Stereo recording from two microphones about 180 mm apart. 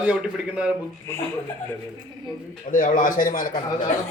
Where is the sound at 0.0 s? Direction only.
5° right (ahead or behind).